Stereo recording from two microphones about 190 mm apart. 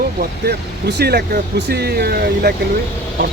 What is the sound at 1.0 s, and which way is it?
Speech, 55° right (ahead or behind).